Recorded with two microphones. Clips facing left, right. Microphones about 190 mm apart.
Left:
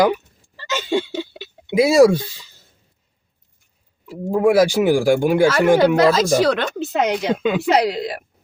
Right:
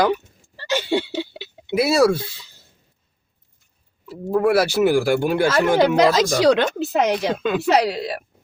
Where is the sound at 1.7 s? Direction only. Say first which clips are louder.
Left 4 dB; 15° left (ahead or behind).